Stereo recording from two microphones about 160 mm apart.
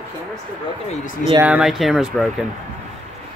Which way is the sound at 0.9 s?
45° left (ahead or behind).